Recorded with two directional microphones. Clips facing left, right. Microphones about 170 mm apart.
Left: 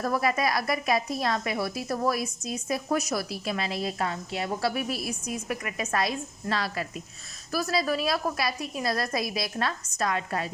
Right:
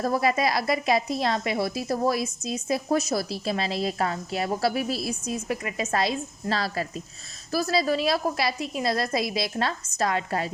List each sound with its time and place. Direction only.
0.0 s speech: 30° right (ahead or behind)